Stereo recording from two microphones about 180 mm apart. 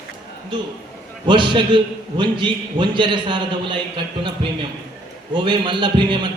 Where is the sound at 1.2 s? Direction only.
25° right (ahead or behind).